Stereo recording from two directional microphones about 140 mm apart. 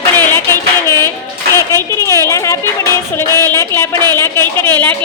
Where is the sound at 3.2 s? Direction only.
25° right (ahead or behind).